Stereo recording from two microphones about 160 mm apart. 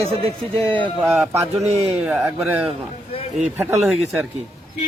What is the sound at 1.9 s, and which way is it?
Speech, 5° right (ahead or behind).